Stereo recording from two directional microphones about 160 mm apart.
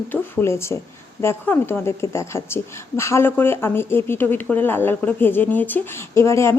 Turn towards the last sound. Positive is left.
turn(degrees=15)  # may be behind; listen again after turning